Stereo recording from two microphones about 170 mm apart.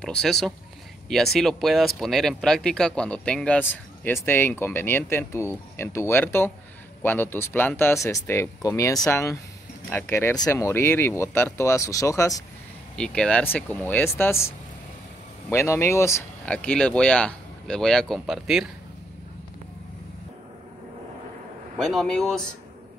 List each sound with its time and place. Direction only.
0.0 s speech: 5° left (ahead or behind); by 12.4 s 20° left (ahead or behind)
12.9 s speech: 5° left (ahead or behind)
15.5 s speech: 15° left (ahead or behind); by 18.7 s centre (ahead or behind)
21.7 s speech: centre (ahead or behind)